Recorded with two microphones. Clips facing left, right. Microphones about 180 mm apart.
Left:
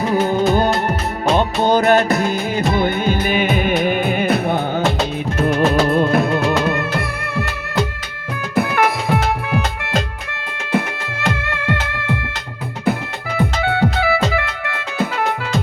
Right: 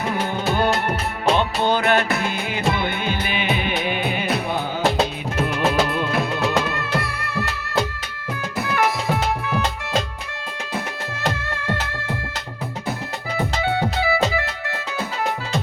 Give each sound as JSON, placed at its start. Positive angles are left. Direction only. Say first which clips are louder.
{"t": 0.1, "sound": "music of bollywood", "louder": "left 9 dB", "side_deg": 40}
{"t": 1.4, "sound": "music", "louder": "left 5 dB", "side_deg": 40}
{"t": 8.5, "sound": "music", "louder": "left 5 dB", "side_deg": 60}
{"t": 11.3, "sound": "music", "louder": "left 4 dB", "side_deg": 60}